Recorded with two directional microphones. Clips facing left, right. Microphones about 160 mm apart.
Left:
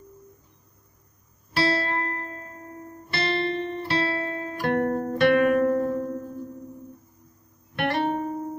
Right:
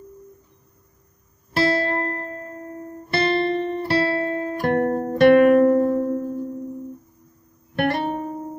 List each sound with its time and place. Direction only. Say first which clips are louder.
1.5 s music: right 4 dB; 50° right (ahead or behind)
7.7 s music: right 4 dB; 45° right (ahead or behind)